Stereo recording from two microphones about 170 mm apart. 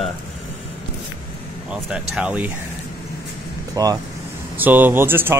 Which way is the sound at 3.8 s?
20° right (ahead or behind).